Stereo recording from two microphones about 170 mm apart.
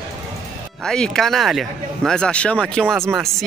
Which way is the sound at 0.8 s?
5° left (ahead or behind).